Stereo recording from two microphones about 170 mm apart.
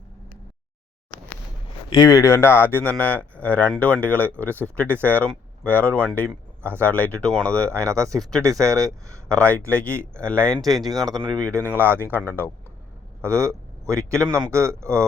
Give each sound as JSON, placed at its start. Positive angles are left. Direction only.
{"t": 1.9, "sound": "speech", "side_deg": 20}
{"t": 7.9, "sound": "speech", "side_deg": -20}
{"t": 9.3, "sound": "speech", "side_deg": 10}
{"t": 10.9, "sound": "speech", "side_deg": -20}
{"t": 12.1, "sound": "speech", "side_deg": 10}
{"t": 13.2, "sound": "speech", "side_deg": -15}